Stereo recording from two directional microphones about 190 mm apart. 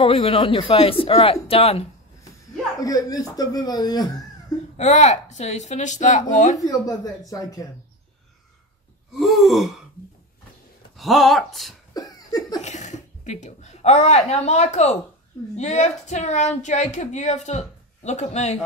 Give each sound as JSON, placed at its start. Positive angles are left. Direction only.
{"t": 0.0, "sound": "a man's voice", "side_deg": 30}
{"t": 2.8, "sound": "a man's voice", "side_deg": 20}
{"t": 4.7, "sound": "speech", "side_deg": 35}
{"t": 6.6, "sound": "a man's voice", "side_deg": 20}
{"t": 9.1, "sound": "speech", "side_deg": 0}
{"t": 11.0, "sound": "speech", "side_deg": 0}
{"t": 11.9, "sound": "cough", "side_deg": 20}
{"t": 12.6, "sound": "speech", "side_deg": 40}